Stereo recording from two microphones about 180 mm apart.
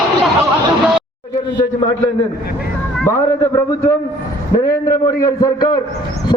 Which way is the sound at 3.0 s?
15° left (ahead or behind).